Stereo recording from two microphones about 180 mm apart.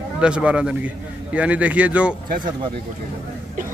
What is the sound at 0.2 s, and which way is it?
A man's voice, 5° right (ahead or behind).